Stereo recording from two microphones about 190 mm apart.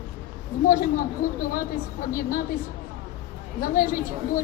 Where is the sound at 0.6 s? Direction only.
45° left (ahead or behind).